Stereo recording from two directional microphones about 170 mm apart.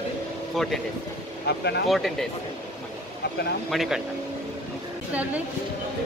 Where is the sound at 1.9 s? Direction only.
Centre (ahead or behind).